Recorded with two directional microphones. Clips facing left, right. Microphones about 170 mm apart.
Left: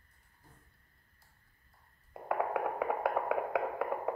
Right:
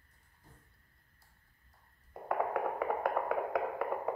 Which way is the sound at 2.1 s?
5° left (ahead or behind).